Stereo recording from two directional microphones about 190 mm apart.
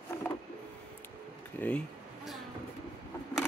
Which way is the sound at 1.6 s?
5° left (ahead or behind).